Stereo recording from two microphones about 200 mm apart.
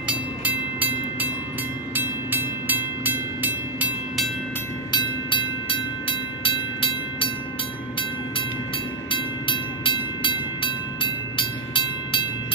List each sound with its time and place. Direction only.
0.4 s train: 10° right (ahead or behind)
4.9 s train: 25° left (ahead or behind)
9.1 s train: 25° left (ahead or behind)